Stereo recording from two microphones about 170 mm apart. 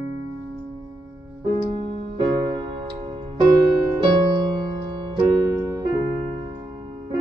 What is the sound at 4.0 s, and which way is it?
Music, 30° right (ahead or behind).